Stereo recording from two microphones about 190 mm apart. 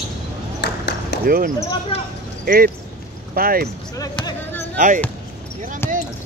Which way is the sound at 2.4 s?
50° right (ahead or behind).